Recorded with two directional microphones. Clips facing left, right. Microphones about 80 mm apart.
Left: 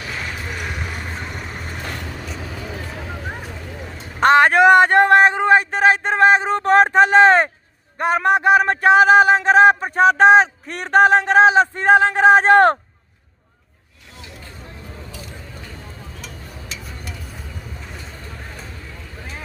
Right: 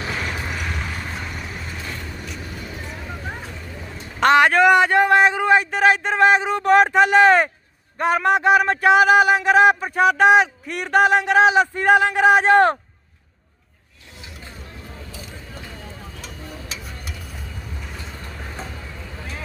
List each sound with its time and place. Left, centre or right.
0.5 s vehicle: centre
1.5 s vehicle: left
4.2 s a sound: left
4.7 s a sound: left
7.9 s speech: left
12.5 s speech: left
16.2 s tick-tock: centre